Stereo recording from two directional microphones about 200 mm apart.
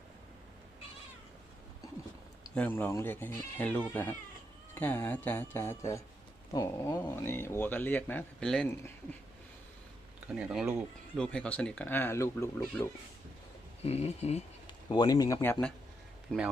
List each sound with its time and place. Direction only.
2.6 s speech: 10° left (ahead or behind)
10.3 s speech: 5° right (ahead or behind); by 13.0 s 15° left (ahead or behind)
13.8 s speech: 30° left (ahead or behind)
14.8 s speech: 20° left (ahead or behind); by 16.4 s 5° left (ahead or behind)